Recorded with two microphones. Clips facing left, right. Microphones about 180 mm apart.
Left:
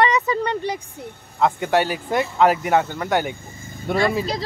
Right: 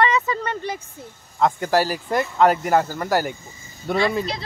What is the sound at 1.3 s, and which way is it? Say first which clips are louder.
Speech: even; centre (ahead or behind).